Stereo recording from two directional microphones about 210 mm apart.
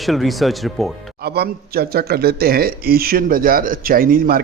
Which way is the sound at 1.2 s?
50° right (ahead or behind).